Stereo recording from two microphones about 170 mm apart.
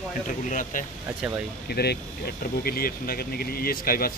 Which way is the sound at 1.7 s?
70° left (ahead or behind).